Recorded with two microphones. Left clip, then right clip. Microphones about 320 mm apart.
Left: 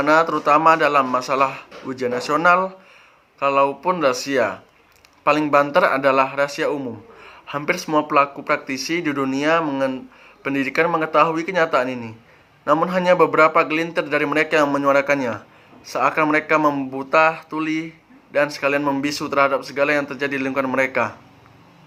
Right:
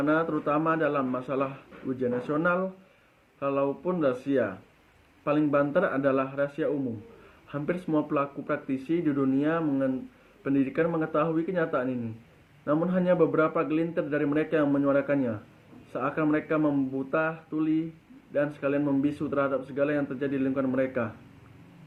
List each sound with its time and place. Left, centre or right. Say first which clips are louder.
0.0 s a man's voice: left 10 dB; centre
3.4 s a man's voice: left 10 dB; centre
12.8 s a man's voice: left 8 dB; centre